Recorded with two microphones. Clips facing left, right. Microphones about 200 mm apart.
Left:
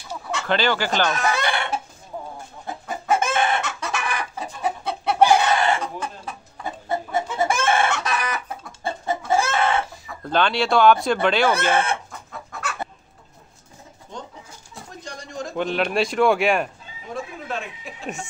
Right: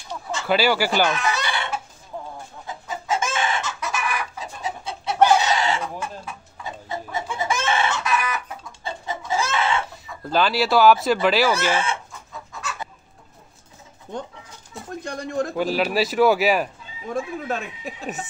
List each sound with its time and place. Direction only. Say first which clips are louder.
0.5 s speech: right 2 dB; 10° right (ahead or behind)
1.1 s chicken: left 2 dB; 50° left (ahead or behind)
8.1 s chicken: right 2 dB; 35° left (ahead or behind)
8.6 s chicken: left 5 dB; 50° left (ahead or behind)
10.2 s speech: even; 5° right (ahead or behind)
11.5 s chicken: left 2 dB; 55° left (ahead or behind)
14.1 s bird: right 5 dB; 55° right (ahead or behind)
15.0 s a sound: right 7 dB; 55° right (ahead or behind)
15.5 s speech: left 2 dB; 5° right (ahead or behind)
17.1 s a sound: right 4 dB; 45° right (ahead or behind)